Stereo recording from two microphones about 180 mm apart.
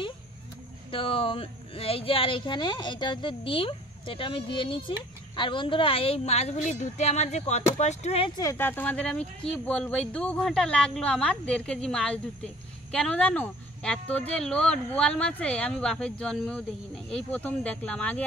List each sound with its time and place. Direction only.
0.9 s speech: 30° left (ahead or behind)
8.4 s speech: 15° left (ahead or behind)